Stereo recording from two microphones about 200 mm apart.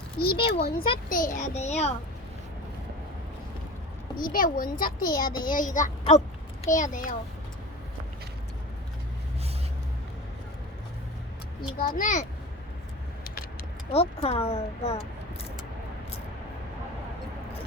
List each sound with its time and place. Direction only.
0.2 s a woman's voice: 50° left (ahead or behind); by 2.0 s 35° left (ahead or behind)
4.2 s a woman's voice: 45° left (ahead or behind)
5.1 s a child's voice: 20° left (ahead or behind)
5.5 s speech: 40° left (ahead or behind)
11.8 s speech: 40° left (ahead or behind)
13.9 s speech: 30° left (ahead or behind)